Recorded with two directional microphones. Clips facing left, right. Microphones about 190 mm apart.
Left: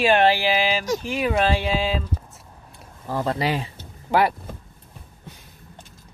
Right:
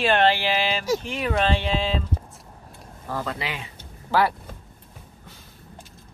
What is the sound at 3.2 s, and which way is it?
Speech, 40° left (ahead or behind).